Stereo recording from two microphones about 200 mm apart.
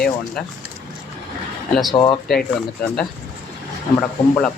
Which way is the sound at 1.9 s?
15° left (ahead or behind).